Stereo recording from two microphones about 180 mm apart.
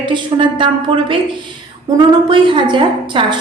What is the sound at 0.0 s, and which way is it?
A woman's voice, 25° right (ahead or behind).